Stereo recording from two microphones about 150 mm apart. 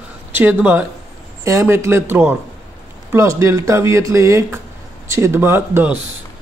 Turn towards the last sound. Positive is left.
turn(degrees=-15)  # may be behind; listen again after turning